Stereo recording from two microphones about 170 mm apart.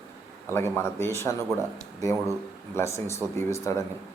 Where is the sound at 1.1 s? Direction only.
15° left (ahead or behind).